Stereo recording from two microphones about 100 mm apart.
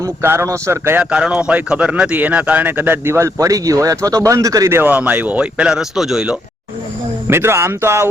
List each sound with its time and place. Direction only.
0.0 s a man's voice: 25° right (ahead or behind)
0.9 s a man's voice: 10° right (ahead or behind); by 4.8 s 35° right (ahead or behind)
4.8 s speech: 20° right (ahead or behind)
7.3 s a man's voice: 25° right (ahead or behind)